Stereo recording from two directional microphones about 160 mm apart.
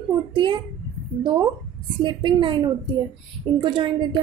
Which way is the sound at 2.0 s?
30° right (ahead or behind).